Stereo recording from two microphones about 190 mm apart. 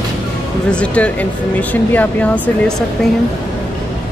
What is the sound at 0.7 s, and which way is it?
Speech, 5° left (ahead or behind).